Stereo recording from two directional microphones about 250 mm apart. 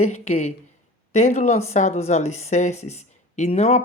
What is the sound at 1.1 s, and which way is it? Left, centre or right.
A woman's voice, left.